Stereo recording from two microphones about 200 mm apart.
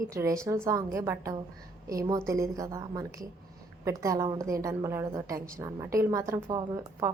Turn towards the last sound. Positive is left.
turn(degrees=-15)  # may be behind; listen again after turning